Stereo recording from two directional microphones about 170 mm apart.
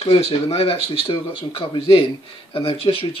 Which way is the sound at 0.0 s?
35° left (ahead or behind).